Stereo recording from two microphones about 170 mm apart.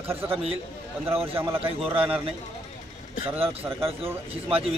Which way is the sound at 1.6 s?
35° right (ahead or behind).